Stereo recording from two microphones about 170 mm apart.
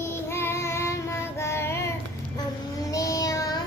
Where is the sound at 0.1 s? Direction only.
15° left (ahead or behind).